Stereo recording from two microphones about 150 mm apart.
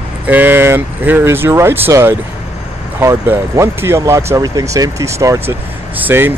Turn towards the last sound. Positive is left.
turn(degrees=-15)  # may be behind; listen again after turning